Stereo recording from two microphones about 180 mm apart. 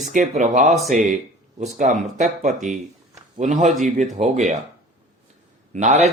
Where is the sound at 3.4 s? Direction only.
40° right (ahead or behind).